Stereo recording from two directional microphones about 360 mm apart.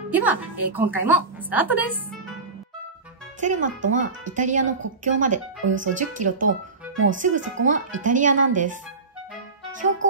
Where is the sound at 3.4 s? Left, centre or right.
Centre.